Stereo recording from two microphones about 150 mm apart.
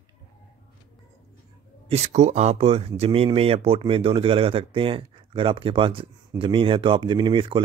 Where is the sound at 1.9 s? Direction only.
45° right (ahead or behind).